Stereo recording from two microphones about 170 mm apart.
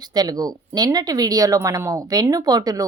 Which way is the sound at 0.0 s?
25° right (ahead or behind).